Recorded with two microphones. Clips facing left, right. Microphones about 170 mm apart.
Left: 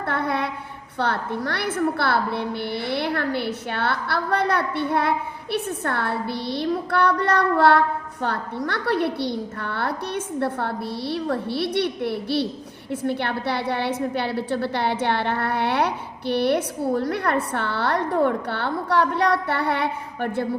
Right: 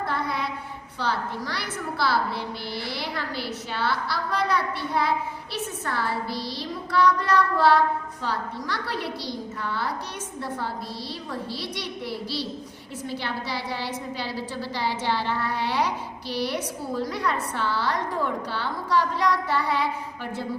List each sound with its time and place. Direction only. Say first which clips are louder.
0.1 s child singing: left 4 dB; 60° left (ahead or behind)
0.9 s a woman's voice: left 4 dB; 60° left (ahead or behind)